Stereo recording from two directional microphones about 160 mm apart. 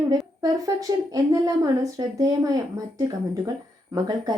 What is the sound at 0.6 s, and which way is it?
A woman's voice, 20° right (ahead or behind).